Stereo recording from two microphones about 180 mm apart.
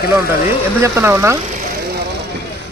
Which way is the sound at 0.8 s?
15° right (ahead or behind).